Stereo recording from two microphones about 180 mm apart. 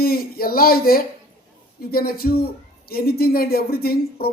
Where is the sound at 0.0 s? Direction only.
55° left (ahead or behind).